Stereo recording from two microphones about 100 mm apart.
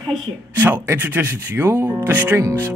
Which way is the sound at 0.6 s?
25° right (ahead or behind).